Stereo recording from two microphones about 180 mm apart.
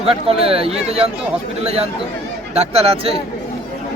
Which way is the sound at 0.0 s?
35° right (ahead or behind).